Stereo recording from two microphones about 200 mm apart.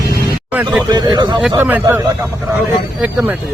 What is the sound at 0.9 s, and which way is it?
Speech, 20° right (ahead or behind).